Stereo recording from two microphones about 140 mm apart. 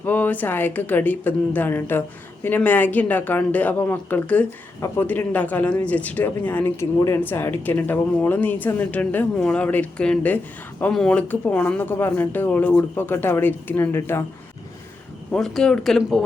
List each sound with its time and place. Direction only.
0.0 s speech: 10° left (ahead or behind)
15.3 s speech: 5° left (ahead or behind)